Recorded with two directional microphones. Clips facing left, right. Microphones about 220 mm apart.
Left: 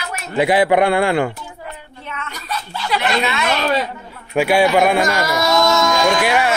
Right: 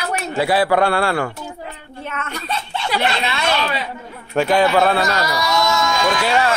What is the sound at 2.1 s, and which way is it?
Child singing, 50° right (ahead or behind).